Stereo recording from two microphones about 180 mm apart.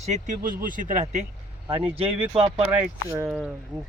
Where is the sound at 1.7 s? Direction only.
30° right (ahead or behind).